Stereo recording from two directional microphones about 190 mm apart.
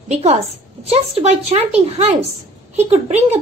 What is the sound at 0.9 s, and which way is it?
A woman's voice, 35° right (ahead or behind).